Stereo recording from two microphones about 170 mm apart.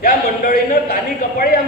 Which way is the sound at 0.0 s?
55° left (ahead or behind).